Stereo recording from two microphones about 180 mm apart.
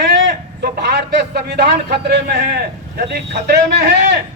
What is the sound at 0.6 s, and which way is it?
Speech, 65° right (ahead or behind).